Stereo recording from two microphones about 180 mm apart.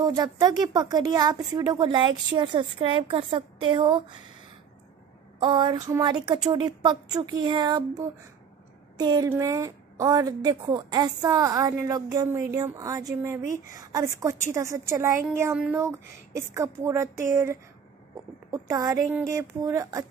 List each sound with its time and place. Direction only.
0.0 s speech: 20° right (ahead or behind)
5.4 s a woman's voice: 25° right (ahead or behind)